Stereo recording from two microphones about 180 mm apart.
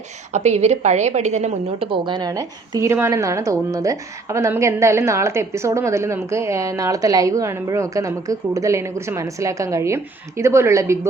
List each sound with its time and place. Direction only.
0.3 s a woman's voice: 40° right (ahead or behind); by 11.1 s 15° right (ahead or behind)